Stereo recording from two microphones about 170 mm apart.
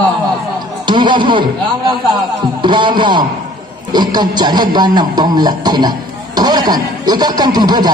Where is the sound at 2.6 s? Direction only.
30° right (ahead or behind).